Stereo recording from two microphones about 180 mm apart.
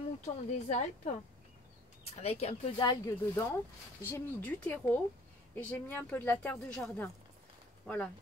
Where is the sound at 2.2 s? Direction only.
35° left (ahead or behind).